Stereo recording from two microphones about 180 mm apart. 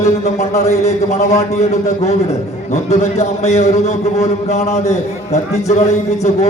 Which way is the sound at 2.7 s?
40° left (ahead or behind).